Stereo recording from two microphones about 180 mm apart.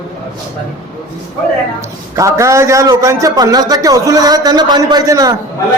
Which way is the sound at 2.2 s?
15° right (ahead or behind).